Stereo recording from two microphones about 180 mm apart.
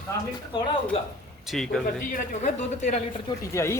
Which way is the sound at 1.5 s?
Centre (ahead or behind).